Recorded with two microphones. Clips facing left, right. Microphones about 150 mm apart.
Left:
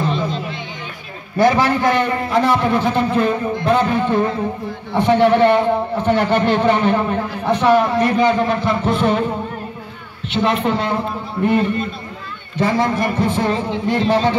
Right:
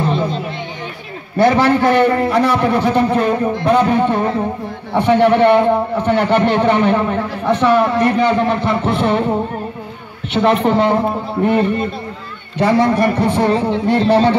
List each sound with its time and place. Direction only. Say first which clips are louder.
1.4 s a man's voice: right 3 dB; 60° right (ahead or behind)
10.3 s a man's voice: right 4 dB; 60° right (ahead or behind)